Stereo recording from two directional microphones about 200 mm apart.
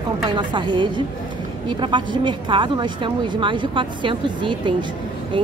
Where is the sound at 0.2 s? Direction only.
20° right (ahead or behind).